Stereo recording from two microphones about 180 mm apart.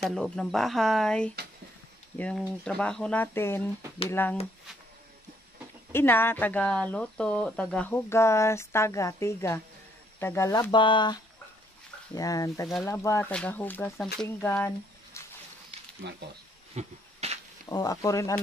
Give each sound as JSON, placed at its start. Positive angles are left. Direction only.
{"t": 0.0, "sound": "speech", "side_deg": 0}
{"t": 5.9, "sound": "speech", "side_deg": 10}
{"t": 15.2, "sound": "a sound", "side_deg": 15}
{"t": 16.0, "sound": "speech", "side_deg": -70}
{"t": 16.7, "sound": "a sound", "side_deg": -35}
{"t": 17.6, "sound": "speech", "side_deg": 20}